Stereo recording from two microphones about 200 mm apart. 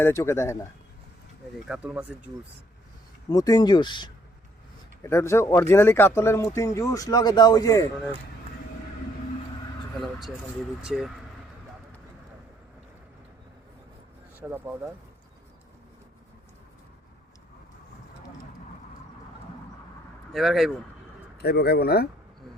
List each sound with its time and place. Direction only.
0.0 s speech: 15° left (ahead or behind)
1.6 s speech: 5° right (ahead or behind)
3.2 s speech: 20° left (ahead or behind)
10.0 s speech: centre (ahead or behind)
14.3 s speech: 10° right (ahead or behind)
20.3 s speech: centre (ahead or behind)
21.4 s speech: 55° left (ahead or behind)